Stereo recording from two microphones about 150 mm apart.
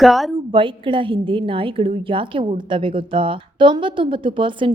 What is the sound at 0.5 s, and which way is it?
A woman's voice, 35° right (ahead or behind).